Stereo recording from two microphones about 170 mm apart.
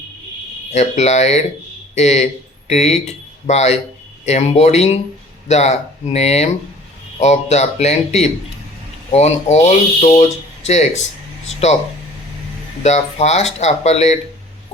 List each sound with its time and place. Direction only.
0.7 s speech: 40° left (ahead or behind)
12.8 s speech: 40° left (ahead or behind)